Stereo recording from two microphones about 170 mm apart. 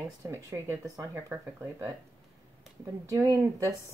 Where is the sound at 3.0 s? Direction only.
20° right (ahead or behind).